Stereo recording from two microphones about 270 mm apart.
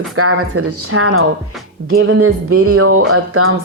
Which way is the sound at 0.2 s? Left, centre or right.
Right.